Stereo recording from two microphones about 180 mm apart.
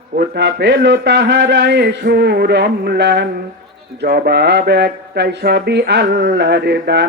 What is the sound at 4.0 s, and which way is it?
Mantra, 60° right (ahead or behind).